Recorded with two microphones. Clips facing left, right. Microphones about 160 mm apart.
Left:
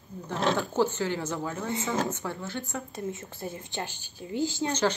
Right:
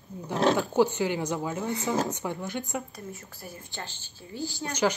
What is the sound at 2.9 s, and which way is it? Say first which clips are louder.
A woman's voice: left 6 dB; 20° left (ahead or behind).